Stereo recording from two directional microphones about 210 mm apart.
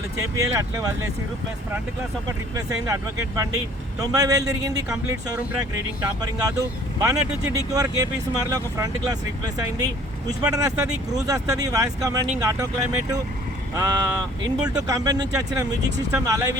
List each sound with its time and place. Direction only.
0.3 s speech: 15° right (ahead or behind)
2.6 s speech: 15° right (ahead or behind)